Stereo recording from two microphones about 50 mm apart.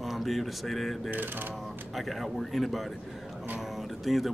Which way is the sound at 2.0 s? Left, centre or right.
Centre.